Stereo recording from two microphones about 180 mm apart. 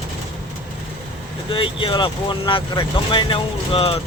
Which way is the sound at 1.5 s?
30° left (ahead or behind).